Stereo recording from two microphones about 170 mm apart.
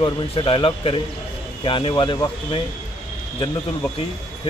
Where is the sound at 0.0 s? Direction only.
30° left (ahead or behind).